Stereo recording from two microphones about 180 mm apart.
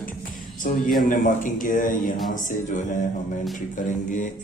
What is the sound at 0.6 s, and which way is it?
A man's voice, 50° left (ahead or behind).